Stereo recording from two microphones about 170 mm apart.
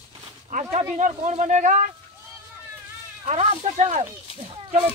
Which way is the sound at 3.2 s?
40° right (ahead or behind).